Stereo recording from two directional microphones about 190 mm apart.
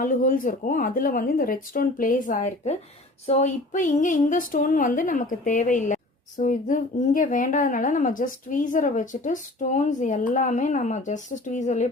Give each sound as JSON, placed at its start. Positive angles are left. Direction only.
{"t": 0.0, "sound": "speech", "side_deg": 45}